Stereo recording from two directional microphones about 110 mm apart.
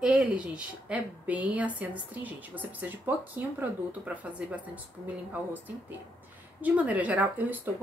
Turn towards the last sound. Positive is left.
turn(degrees=-15)  # may be behind; listen again after turning